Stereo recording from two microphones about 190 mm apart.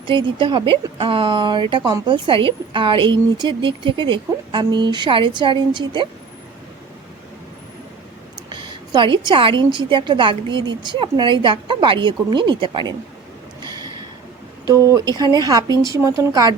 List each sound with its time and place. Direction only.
0.1 s speech: 25° right (ahead or behind)
8.4 s speech: 25° right (ahead or behind)
13.7 s a sound: 20° right (ahead or behind)
14.7 s speech: 15° right (ahead or behind)